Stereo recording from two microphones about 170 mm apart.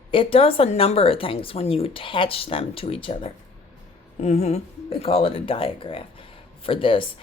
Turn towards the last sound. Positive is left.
turn(degrees=30)  # may be behind; listen again after turning